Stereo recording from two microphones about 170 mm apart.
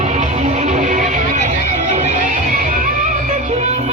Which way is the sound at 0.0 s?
40° right (ahead or behind).